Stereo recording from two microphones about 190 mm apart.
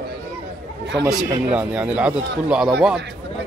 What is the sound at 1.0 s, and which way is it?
A man's voice, 5° right (ahead or behind).